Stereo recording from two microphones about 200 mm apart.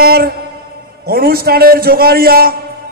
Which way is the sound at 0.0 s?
50° right (ahead or behind).